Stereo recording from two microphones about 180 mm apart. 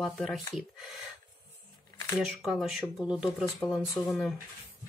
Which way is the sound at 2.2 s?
Centre (ahead or behind).